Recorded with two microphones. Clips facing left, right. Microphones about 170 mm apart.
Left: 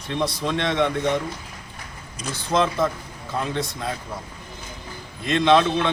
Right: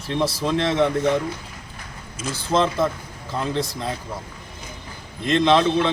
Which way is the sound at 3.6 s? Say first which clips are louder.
Right 2 dB; centre (ahead or behind).